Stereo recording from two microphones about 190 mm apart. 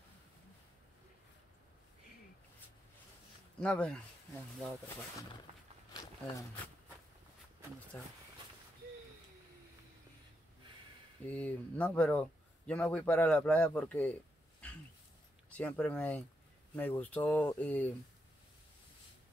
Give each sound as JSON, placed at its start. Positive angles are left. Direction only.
{"t": 3.5, "sound": "speech", "side_deg": 5}
{"t": 5.9, "sound": "a sound", "side_deg": 20}
{"t": 7.9, "sound": "speech", "side_deg": 10}
{"t": 11.2, "sound": "speech", "side_deg": 10}
{"t": 14.6, "sound": "dog", "side_deg": 5}
{"t": 15.5, "sound": "speech", "side_deg": 5}